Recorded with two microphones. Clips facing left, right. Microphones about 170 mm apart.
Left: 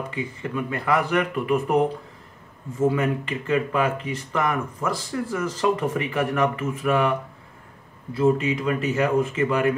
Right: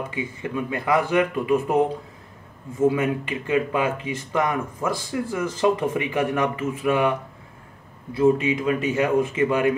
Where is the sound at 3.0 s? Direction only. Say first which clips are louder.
Even; 15° right (ahead or behind).